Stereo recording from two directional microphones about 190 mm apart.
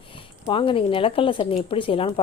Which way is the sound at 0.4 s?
30° left (ahead or behind).